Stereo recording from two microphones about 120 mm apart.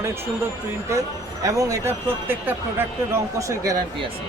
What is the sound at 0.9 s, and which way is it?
Speech, 25° right (ahead or behind).